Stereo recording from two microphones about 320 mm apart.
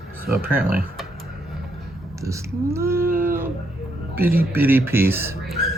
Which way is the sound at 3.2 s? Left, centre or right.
Centre.